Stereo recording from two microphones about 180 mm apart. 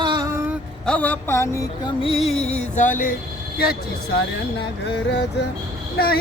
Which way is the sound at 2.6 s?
40° left (ahead or behind).